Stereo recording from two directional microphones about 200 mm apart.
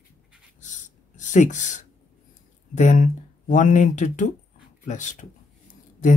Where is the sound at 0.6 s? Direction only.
40° left (ahead or behind).